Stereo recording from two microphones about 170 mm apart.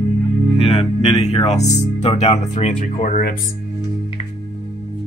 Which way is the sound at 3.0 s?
60° left (ahead or behind).